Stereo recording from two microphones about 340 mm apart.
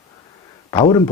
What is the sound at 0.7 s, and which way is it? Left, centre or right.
Speech, centre.